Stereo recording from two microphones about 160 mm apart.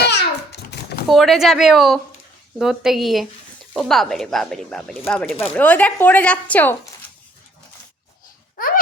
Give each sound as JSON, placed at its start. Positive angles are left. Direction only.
{"t": 0.0, "sound": "babbling", "side_deg": 90}
{"t": 1.0, "sound": "speech", "side_deg": 0}
{"t": 8.5, "sound": "a sound", "side_deg": 60}